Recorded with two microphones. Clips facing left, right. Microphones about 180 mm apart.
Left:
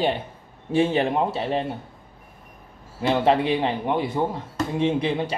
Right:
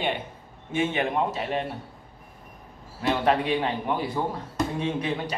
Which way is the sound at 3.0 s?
25° left (ahead or behind).